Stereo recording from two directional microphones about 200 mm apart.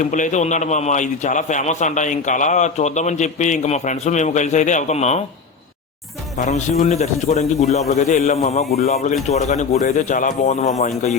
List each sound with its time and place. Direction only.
0.0 s a man's voice: 40° left (ahead or behind)
6.4 s a man's voice: 35° left (ahead or behind)